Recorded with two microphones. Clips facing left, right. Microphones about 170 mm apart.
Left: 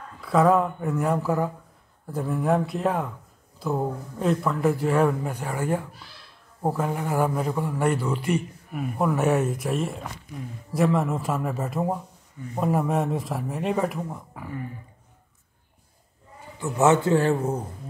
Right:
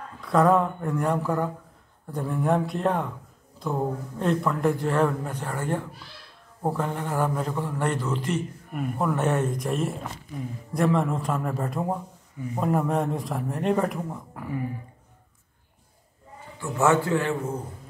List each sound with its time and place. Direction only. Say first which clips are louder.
0.2 s a man's voice: left 1 dB; centre (ahead or behind)
16.5 s a man's voice: left 2 dB; 20° left (ahead or behind)